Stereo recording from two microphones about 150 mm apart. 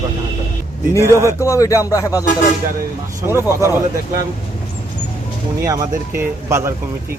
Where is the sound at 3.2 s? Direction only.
15° right (ahead or behind).